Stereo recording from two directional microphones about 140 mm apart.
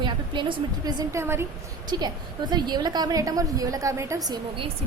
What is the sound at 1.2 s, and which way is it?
Speech, 15° right (ahead or behind).